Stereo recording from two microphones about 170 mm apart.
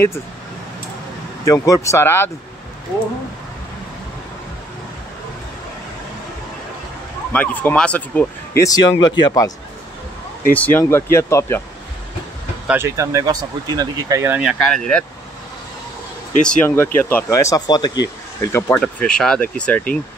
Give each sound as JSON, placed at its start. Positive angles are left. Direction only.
{"t": 1.4, "sound": "speech", "side_deg": 20}
{"t": 7.3, "sound": "speech", "side_deg": 5}
{"t": 8.6, "sound": "speech", "side_deg": 25}
{"t": 10.5, "sound": "speech", "side_deg": 10}
{"t": 12.6, "sound": "speech", "side_deg": -15}
{"t": 14.3, "sound": "speech", "side_deg": -5}
{"t": 16.3, "sound": "speech", "side_deg": 5}